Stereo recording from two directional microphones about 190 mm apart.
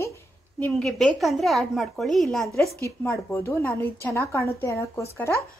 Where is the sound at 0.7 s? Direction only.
Centre (ahead or behind).